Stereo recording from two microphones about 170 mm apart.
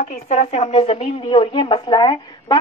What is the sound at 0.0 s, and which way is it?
A woman's voice, 40° left (ahead or behind).